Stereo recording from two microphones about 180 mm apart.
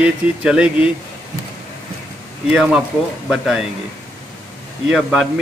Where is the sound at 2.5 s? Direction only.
5° right (ahead or behind).